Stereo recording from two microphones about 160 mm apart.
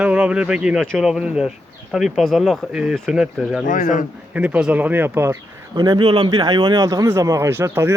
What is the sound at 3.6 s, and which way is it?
Speech, 55° left (ahead or behind).